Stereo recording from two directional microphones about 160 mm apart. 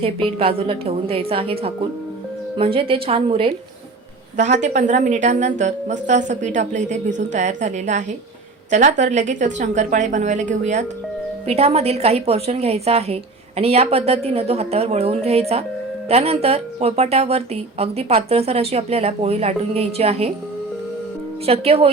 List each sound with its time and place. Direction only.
0.3 s speech: 35° right (ahead or behind)
4.4 s a woman's voice: 45° right (ahead or behind)
21.4 s speech: 40° right (ahead or behind)